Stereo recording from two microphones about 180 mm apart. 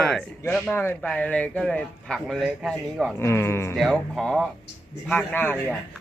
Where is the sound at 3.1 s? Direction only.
15° left (ahead or behind).